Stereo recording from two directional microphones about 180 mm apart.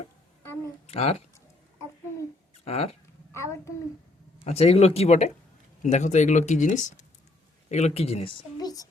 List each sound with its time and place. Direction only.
0.9 s speech: 35° left (ahead or behind)
2.6 s speech: 35° left (ahead or behind)
3.3 s a child's voice: 15° left (ahead or behind)
4.4 s a woman's voice: 35° left (ahead or behind)